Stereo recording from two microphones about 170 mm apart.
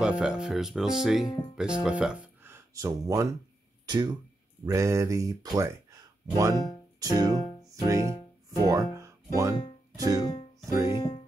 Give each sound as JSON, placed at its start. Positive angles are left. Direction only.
{"t": 0.0, "sound": "speech", "side_deg": -5}
{"t": 7.0, "sound": "music", "side_deg": -20}
{"t": 8.6, "sound": "speech", "side_deg": -20}
{"t": 9.9, "sound": "music", "side_deg": -20}
{"t": 10.6, "sound": "speech", "side_deg": -15}